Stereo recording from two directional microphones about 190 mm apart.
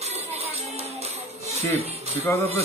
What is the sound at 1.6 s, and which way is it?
Speech, 10° left (ahead or behind).